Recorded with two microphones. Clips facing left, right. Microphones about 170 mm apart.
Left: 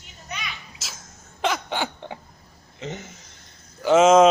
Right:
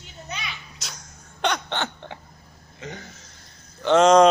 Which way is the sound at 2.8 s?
20° left (ahead or behind).